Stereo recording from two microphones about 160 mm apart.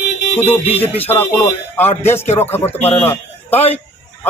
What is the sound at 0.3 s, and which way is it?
A man's voice, 10° left (ahead or behind).